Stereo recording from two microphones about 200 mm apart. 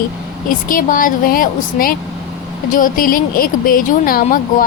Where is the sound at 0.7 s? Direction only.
45° left (ahead or behind).